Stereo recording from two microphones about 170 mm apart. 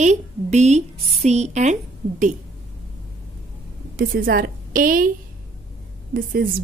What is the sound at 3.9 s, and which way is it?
A woman's voice, 55° right (ahead or behind).